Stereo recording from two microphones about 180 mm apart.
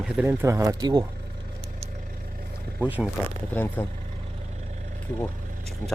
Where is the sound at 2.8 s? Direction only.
10° right (ahead or behind).